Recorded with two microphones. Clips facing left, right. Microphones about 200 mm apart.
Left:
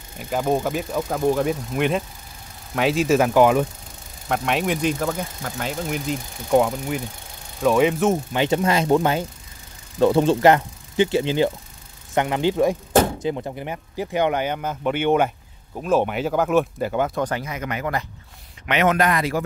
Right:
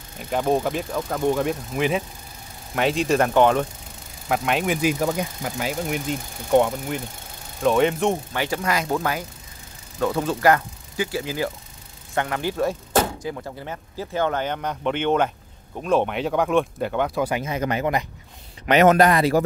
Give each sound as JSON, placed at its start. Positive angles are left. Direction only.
{"t": 0.2, "sound": "speech", "side_deg": 0}
{"t": 8.3, "sound": "speech", "side_deg": 20}
{"t": 17.5, "sound": "speech", "side_deg": -30}